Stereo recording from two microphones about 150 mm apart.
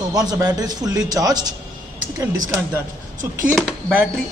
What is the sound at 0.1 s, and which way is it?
A man's voice, 25° right (ahead or behind).